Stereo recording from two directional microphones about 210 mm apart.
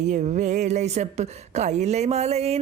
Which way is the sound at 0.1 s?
35° right (ahead or behind).